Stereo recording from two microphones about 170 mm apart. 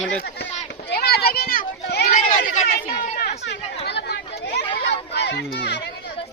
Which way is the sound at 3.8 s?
80° left.